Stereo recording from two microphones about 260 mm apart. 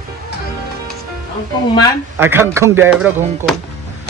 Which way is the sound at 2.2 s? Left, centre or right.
Centre.